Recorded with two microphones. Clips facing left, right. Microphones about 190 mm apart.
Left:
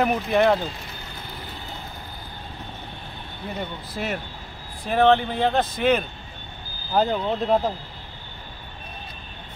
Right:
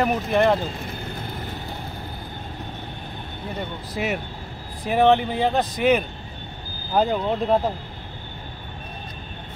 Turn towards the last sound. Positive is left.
turn(degrees=-5)  # may be behind; listen again after turning